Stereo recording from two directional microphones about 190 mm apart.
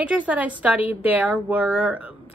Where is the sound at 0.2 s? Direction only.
10° right (ahead or behind).